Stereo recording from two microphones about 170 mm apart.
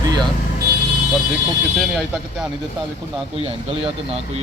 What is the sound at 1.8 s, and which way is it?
Speech, centre (ahead or behind).